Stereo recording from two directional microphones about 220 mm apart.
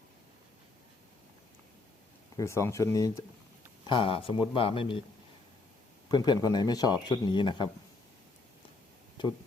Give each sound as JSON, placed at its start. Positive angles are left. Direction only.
{"t": 2.3, "sound": "speech", "side_deg": 15}
{"t": 6.1, "sound": "speech", "side_deg": 20}